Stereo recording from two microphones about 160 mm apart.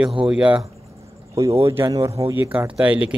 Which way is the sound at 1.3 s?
20° right (ahead or behind).